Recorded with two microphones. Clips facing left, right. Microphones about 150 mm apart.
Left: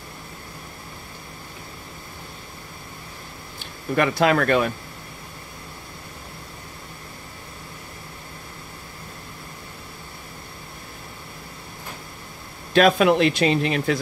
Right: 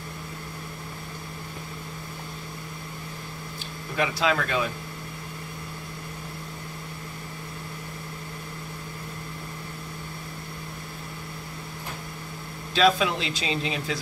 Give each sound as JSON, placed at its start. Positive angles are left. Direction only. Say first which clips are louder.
{"t": 3.9, "sound": "speech", "louder": "left 6 dB", "side_deg": 55}
{"t": 12.7, "sound": "speech", "louder": "left 6 dB", "side_deg": 60}